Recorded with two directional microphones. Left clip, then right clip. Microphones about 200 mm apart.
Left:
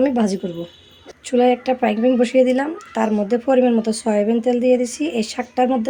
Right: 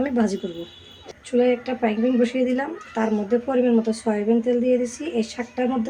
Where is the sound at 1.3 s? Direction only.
50° left (ahead or behind).